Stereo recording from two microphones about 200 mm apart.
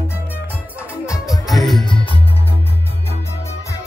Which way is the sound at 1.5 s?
Centre (ahead or behind).